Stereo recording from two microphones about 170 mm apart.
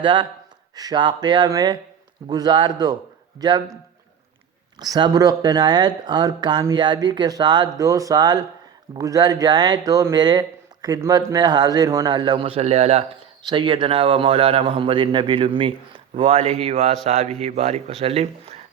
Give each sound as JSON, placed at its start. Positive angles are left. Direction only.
{"t": 0.0, "sound": "speech", "side_deg": -30}
{"t": 4.8, "sound": "speech", "side_deg": -25}
{"t": 13.4, "sound": "a man's voice", "side_deg": -30}